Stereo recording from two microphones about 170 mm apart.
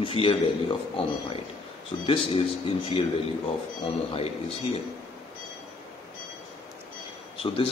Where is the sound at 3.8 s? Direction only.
35° left (ahead or behind).